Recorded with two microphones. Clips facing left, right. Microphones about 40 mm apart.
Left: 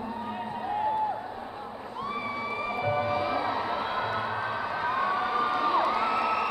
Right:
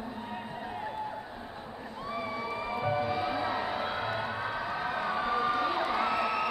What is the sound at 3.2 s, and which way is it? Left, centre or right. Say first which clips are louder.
Crowd: left 3 dB; centre.